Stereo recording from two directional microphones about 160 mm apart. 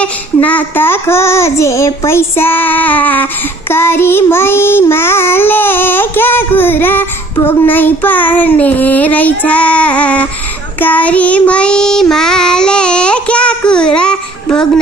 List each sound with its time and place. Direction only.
0.0 s child singing: 10° left (ahead or behind)